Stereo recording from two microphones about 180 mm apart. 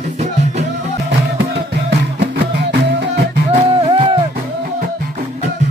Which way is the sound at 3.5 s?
30° right (ahead or behind).